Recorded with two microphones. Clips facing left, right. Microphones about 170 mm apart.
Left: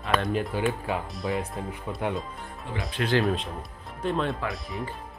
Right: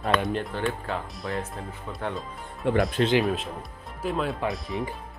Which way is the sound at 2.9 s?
20° right (ahead or behind).